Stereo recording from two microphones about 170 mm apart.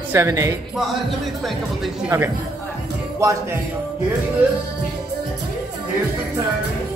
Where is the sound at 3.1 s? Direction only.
20° right (ahead or behind).